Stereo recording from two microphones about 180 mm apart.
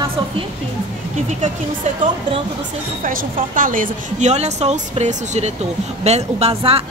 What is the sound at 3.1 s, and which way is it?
A woman's voice, 50° right (ahead or behind).